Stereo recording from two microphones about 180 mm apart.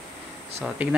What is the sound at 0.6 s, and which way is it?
Speech, 5° right (ahead or behind).